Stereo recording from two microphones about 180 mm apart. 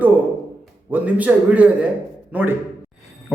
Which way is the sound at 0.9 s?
10° right (ahead or behind).